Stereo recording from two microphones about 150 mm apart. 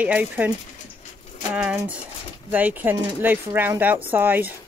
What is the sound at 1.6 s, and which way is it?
Speech, 5° right (ahead or behind).